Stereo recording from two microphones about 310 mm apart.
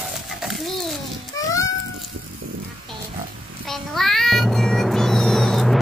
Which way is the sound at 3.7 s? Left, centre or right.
Centre.